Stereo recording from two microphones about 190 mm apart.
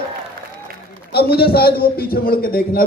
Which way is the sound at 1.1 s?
55° left (ahead or behind).